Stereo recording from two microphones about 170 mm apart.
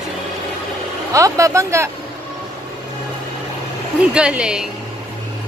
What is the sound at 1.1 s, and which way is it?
Speech, 20° right (ahead or behind).